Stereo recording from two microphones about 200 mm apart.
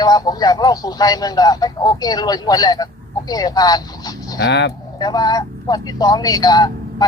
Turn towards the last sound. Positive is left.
turn(degrees=20)  # may be behind; listen again after turning